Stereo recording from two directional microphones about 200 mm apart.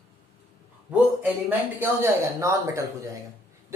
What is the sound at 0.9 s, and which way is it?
Speech, 10° right (ahead or behind).